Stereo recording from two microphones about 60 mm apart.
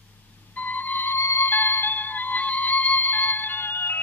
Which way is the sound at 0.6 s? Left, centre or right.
Left.